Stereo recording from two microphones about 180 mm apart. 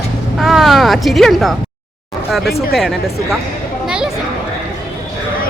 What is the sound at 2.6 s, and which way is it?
Speech, centre (ahead or behind).